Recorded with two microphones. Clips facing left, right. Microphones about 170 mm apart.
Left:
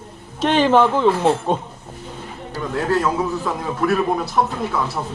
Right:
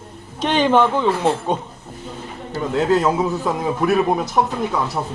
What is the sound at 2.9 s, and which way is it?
Speech, 20° right (ahead or behind).